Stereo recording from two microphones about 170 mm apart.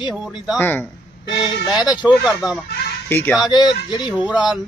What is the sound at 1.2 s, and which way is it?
Speech, 25° left (ahead or behind).